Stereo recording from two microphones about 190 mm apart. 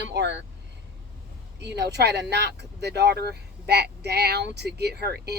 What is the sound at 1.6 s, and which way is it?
Speech, 60° right (ahead or behind).